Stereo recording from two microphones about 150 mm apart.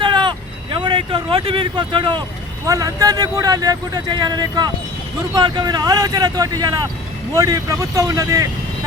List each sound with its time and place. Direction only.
0.0 s vehicle: 30° right (ahead or behind)
2.6 s speech: 25° right (ahead or behind)